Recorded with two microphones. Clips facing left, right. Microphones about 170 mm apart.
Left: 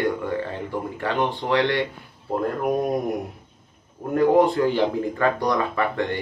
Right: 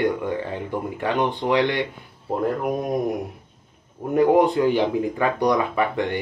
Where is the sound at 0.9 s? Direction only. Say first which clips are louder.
Right 2 dB; 15° right (ahead or behind).